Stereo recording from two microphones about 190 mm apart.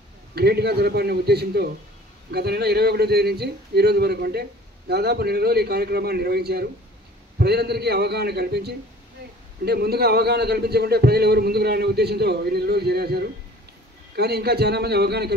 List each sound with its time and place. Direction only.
0.3 s a man's voice: 55° right (ahead or behind)